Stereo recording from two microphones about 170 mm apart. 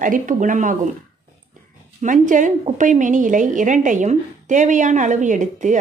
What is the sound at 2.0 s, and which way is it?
A woman's voice, 50° right (ahead or behind).